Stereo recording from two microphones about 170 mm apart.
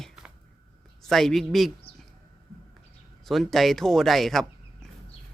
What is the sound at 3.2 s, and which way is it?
Speech, centre (ahead or behind).